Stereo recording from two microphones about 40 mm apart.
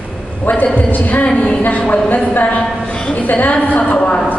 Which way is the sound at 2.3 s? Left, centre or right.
Left.